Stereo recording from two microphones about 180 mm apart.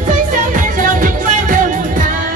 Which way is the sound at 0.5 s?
45° right (ahead or behind).